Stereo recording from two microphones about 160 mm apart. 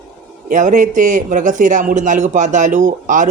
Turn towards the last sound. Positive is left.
turn(degrees=-50)  # may be behind; listen again after turning